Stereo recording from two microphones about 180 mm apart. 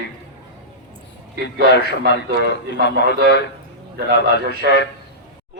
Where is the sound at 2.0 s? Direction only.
60° right (ahead or behind).